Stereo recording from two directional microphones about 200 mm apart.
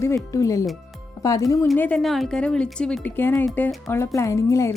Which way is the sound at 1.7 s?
5° left (ahead or behind).